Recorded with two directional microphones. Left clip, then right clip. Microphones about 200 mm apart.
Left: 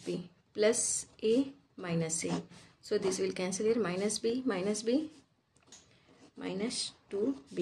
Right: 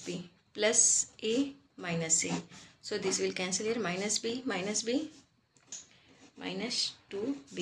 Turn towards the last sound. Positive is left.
turn(degrees=50)  # may be behind; listen again after turning